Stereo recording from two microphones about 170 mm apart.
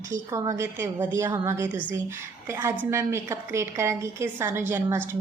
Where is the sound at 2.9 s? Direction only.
15° right (ahead or behind).